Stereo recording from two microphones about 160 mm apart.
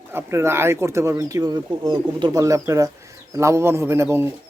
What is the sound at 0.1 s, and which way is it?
Speech, 15° right (ahead or behind).